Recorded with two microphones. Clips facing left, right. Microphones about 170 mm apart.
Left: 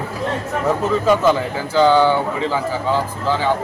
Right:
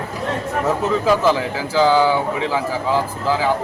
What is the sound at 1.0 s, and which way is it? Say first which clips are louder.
A man's voice: left 2 dB; 5° right (ahead or behind).